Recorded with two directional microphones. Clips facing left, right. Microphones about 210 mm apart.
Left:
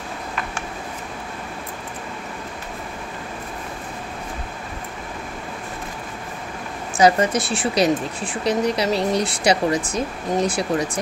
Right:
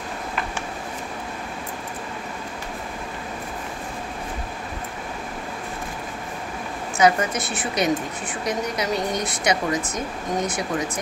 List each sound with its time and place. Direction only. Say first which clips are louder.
7.0 s speech: left 3 dB; 35° left (ahead or behind)